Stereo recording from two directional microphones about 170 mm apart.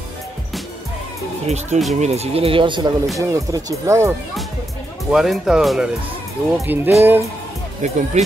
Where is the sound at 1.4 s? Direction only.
40° right (ahead or behind); by 4.1 s 15° right (ahead or behind).